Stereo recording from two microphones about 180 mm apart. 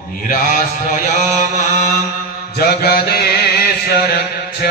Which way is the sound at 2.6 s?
60° left (ahead or behind).